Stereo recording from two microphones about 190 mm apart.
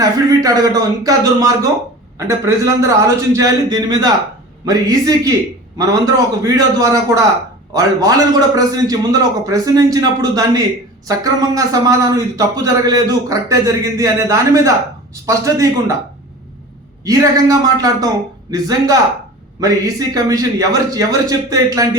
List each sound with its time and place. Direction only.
0.0 s a man's voice: 20° right (ahead or behind)
17.0 s a man's voice: 20° right (ahead or behind)